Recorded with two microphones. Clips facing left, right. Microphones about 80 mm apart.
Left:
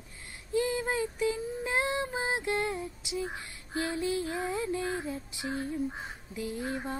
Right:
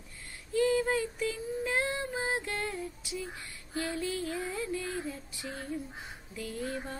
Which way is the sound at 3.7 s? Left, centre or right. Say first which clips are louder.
Left 3 dB; left.